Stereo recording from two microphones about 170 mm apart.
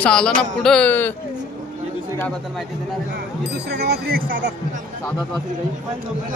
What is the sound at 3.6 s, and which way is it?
Speech, 70° right (ahead or behind).